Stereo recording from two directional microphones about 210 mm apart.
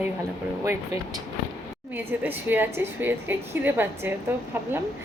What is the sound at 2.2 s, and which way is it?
A woman's voice, 10° right (ahead or behind).